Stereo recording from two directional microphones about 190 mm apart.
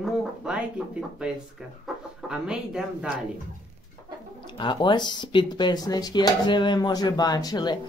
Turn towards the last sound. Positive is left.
turn(degrees=20)  # may be behind; listen again after turning